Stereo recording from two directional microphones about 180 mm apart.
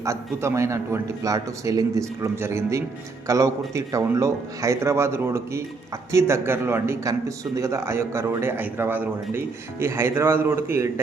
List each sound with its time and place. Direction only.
0.0 s a man's voice: 15° right (ahead or behind)